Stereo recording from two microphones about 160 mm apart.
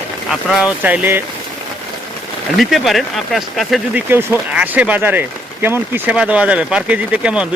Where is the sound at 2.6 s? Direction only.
Centre (ahead or behind).